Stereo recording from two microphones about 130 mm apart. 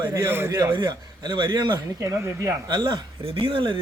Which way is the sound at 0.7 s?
35° right (ahead or behind).